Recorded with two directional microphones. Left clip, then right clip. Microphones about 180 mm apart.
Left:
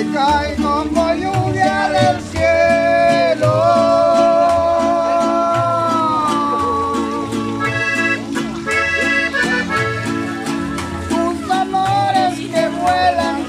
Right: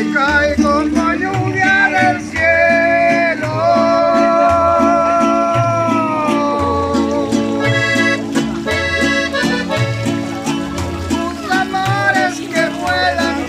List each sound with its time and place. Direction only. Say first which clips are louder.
0.1 s music: right 3 dB; 10° left (ahead or behind)
1.6 s music: right 4 dB; 35° left (ahead or behind)
2.0 s music: right 1 dB; 15° left (ahead or behind)
5.2 s music: right 1 dB; 10° right (ahead or behind)
7.0 s music: right 4 dB; 30° right (ahead or behind)
11.5 s music: even; 15° left (ahead or behind)